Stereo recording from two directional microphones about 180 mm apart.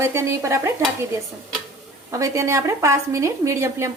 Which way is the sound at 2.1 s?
15° right (ahead or behind).